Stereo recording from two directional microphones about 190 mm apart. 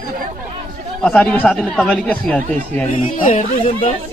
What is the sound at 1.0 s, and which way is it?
Speech, 5° left (ahead or behind).